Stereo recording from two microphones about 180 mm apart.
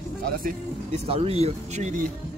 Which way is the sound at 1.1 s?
35° right (ahead or behind).